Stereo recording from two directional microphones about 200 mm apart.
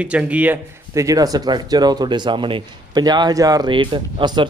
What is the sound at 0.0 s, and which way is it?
Speech, 5° right (ahead or behind).